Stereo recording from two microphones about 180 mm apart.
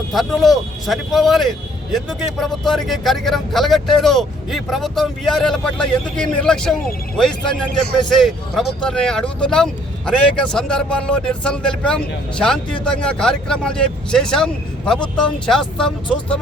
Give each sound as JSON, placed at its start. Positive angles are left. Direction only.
{"t": 0.1, "sound": "a man's voice", "side_deg": 0}
{"t": 8.1, "sound": "a man's voice", "side_deg": 0}